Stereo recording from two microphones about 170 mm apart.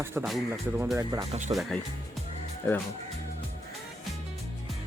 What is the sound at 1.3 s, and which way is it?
Speech, 45° right (ahead or behind).